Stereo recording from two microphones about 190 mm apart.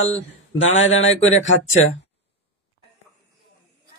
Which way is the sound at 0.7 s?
90° left.